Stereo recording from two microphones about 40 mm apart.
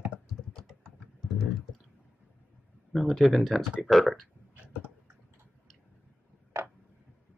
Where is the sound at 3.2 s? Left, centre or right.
Centre.